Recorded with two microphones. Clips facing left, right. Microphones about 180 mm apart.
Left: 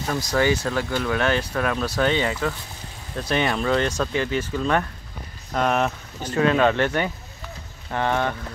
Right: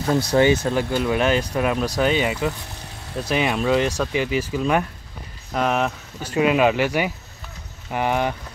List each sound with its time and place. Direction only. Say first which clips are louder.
0.3 s speech: right 3 dB; 20° right (ahead or behind); by 6.3 s centre (ahead or behind)
6.3 s speech: right 1 dB; 10° right (ahead or behind)